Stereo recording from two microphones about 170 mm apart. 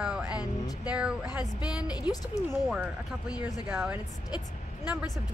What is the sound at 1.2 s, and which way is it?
Speech, 20° left (ahead or behind).